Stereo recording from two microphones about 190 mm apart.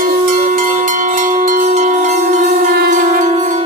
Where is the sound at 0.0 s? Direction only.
45° right (ahead or behind).